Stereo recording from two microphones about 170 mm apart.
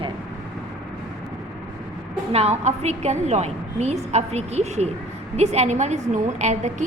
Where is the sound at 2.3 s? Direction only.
40° right (ahead or behind).